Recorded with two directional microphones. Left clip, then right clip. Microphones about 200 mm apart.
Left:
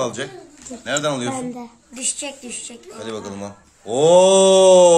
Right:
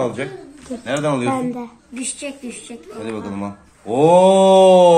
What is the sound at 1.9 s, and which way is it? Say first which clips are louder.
Speech: left 1 dB; 60° left (ahead or behind).